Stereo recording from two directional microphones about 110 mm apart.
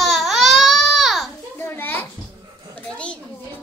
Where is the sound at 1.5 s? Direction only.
20° left (ahead or behind).